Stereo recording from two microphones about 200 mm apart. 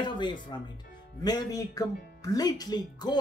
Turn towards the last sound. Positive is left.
turn(degrees=20)  # may be behind; listen again after turning